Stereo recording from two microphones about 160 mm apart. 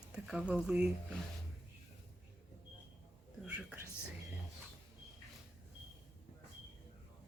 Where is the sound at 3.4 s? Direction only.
10° right (ahead or behind).